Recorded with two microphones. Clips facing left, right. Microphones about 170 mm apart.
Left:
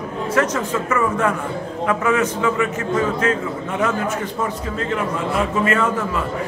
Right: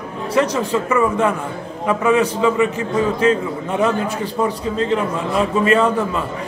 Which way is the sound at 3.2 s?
25° right (ahead or behind).